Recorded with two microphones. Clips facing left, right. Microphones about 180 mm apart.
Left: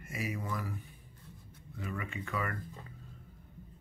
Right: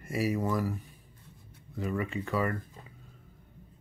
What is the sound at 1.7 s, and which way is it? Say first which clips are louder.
Speech: right 8 dB; 35° right (ahead or behind).